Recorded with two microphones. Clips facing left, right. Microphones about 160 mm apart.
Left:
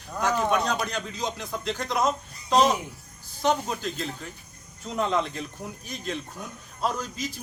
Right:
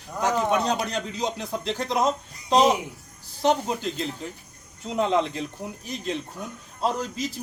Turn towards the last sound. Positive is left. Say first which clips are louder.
# right 3 dB
turn(degrees=-25)  # may be behind; listen again after turning